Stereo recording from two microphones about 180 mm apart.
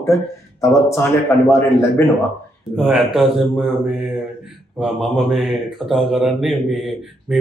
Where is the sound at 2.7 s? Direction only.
Centre (ahead or behind).